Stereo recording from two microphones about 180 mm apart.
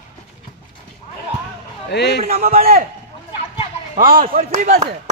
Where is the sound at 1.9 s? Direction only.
70° left (ahead or behind).